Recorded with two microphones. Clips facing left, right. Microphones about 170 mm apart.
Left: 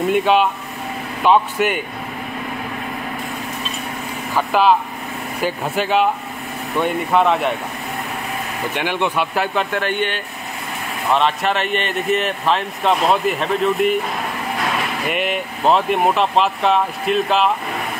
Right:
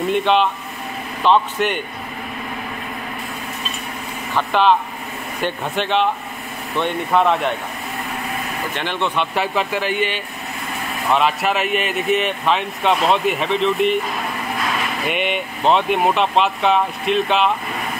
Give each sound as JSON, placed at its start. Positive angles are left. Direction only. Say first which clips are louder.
{"t": 0.1, "sound": "speech", "louder": "left 1 dB", "side_deg": 5}
{"t": 4.4, "sound": "speech", "louder": "left 1 dB", "side_deg": 5}
{"t": 8.7, "sound": "speech", "louder": "left 2 dB", "side_deg": 10}
{"t": 15.0, "sound": "speech", "louder": "right 1 dB", "side_deg": 0}